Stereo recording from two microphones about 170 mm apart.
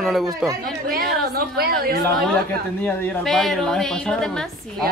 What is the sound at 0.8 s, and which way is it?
A woman's voice, 65° right (ahead or behind).